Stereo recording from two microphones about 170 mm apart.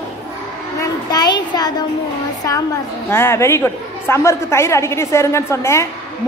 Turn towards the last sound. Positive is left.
turn(degrees=15)  # may be behind; listen again after turning